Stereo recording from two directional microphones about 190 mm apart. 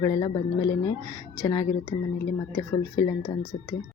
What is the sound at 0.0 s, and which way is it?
Speech, 20° left (ahead or behind).